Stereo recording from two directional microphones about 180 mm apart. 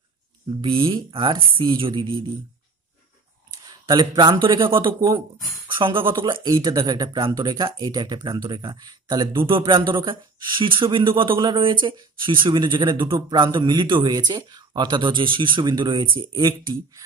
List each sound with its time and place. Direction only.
0.6 s speech: 30° right (ahead or behind)
3.6 s speech: 25° right (ahead or behind)
5.8 s speech: 30° right (ahead or behind)